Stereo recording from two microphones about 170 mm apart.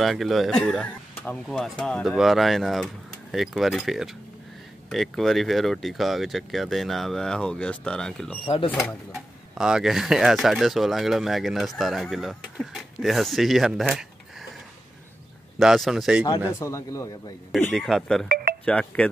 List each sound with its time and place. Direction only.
0.0 s speech: centre (ahead or behind)
8.5 s speech: 30° left (ahead or behind)
8.7 s speech: centre (ahead or behind)
15.6 s speech: centre (ahead or behind)
16.3 s a man's voice: 15° left (ahead or behind)
17.7 s a man's voice: centre (ahead or behind)